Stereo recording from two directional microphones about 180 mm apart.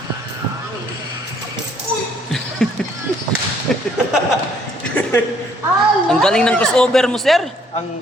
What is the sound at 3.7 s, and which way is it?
Whip, 5° left (ahead or behind).